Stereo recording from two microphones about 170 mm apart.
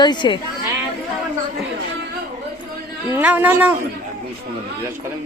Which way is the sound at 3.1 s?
10° right (ahead or behind).